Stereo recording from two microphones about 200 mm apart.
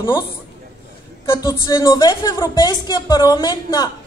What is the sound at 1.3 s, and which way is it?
A woman's voice, 15° left (ahead or behind).